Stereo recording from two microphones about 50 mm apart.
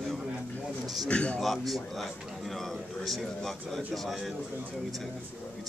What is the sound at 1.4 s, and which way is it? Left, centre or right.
Speech, centre.